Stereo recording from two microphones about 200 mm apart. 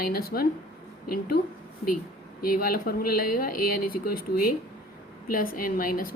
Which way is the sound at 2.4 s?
45° left (ahead or behind).